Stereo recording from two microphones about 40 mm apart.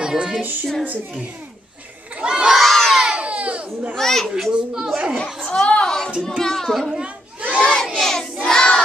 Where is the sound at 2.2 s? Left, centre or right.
Right.